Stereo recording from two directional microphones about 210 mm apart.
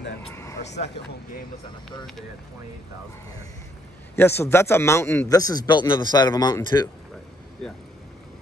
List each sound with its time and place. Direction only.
0.3 s vehicle: 15° left (ahead or behind)
4.1 s a man's voice: 10° left (ahead or behind)
7.6 s speech: centre (ahead or behind)